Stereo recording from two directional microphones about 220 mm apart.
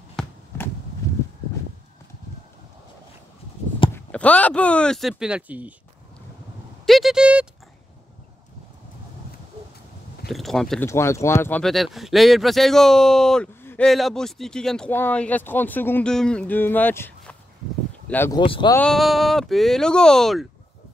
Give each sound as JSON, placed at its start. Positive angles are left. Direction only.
{"t": 0.1, "sound": "basketball bounce", "side_deg": 5}
{"t": 3.9, "sound": "speech", "side_deg": 5}
{"t": 6.9, "sound": "a sound", "side_deg": 0}
{"t": 10.2, "sound": "speech", "side_deg": 0}
{"t": 10.9, "sound": "speech", "side_deg": 10}
{"t": 18.4, "sound": "speech", "side_deg": 20}
{"t": 18.8, "sound": "speech", "side_deg": 0}